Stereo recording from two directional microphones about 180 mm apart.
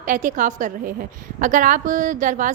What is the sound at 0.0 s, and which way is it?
A woman's voice, 45° right (ahead or behind).